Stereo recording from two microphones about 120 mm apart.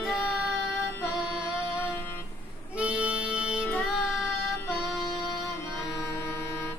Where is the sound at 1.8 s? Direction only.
15° left (ahead or behind).